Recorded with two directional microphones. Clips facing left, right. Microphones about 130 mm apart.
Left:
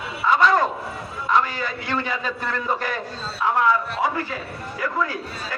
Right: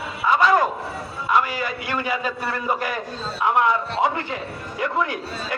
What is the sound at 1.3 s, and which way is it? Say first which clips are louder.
A man's voice: even; 10° right (ahead or behind).